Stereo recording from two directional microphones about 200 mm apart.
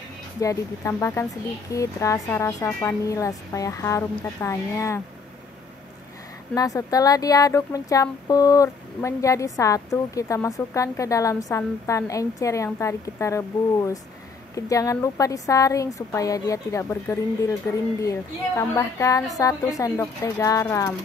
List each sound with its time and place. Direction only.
0.4 s speech: 15° left (ahead or behind)
6.5 s speech: 15° left (ahead or behind)